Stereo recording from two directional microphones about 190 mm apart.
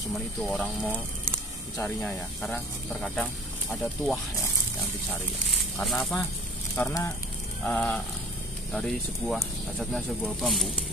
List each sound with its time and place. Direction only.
0.4 s speech: centre (ahead or behind)
6.7 s speech: 15° left (ahead or behind)